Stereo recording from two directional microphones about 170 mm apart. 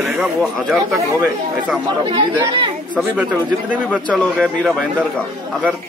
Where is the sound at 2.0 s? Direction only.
30° right (ahead or behind).